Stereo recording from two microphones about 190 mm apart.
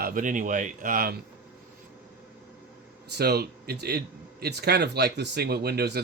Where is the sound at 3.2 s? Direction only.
55° right (ahead or behind).